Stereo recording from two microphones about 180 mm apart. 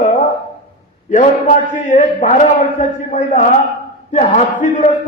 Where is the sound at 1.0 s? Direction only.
45° left (ahead or behind).